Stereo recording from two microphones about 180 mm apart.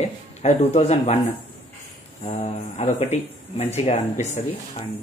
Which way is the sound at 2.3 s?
35° left (ahead or behind).